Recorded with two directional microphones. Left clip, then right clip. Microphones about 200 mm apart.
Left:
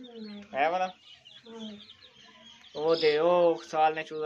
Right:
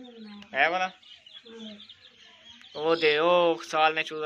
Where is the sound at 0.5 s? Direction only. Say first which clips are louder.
Right 3 dB; centre (ahead or behind).